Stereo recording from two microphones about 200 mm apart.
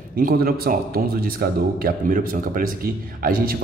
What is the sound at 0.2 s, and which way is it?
A man's voice, 50° right (ahead or behind).